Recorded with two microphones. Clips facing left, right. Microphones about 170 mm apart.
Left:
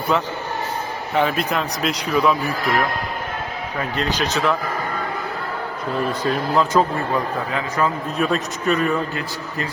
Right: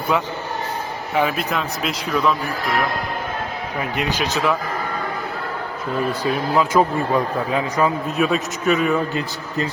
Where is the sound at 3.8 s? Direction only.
15° right (ahead or behind).